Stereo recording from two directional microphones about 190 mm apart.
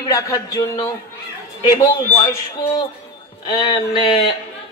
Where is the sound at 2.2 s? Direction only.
20° left (ahead or behind).